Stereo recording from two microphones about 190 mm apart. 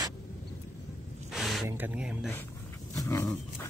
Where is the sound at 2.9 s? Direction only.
15° left (ahead or behind).